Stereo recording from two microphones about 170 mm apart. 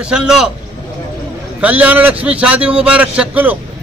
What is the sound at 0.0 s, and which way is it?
Speech, 5° right (ahead or behind).